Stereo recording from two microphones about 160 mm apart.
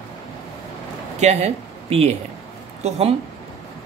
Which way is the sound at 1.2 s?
45° right (ahead or behind).